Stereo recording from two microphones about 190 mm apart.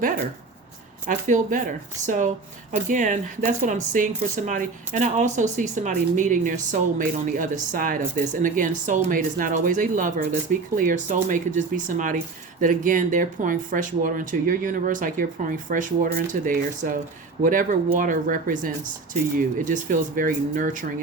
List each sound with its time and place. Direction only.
1.0 s speech: 45° right (ahead or behind)